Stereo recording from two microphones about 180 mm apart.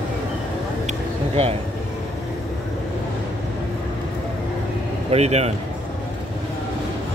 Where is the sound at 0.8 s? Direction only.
35° right (ahead or behind).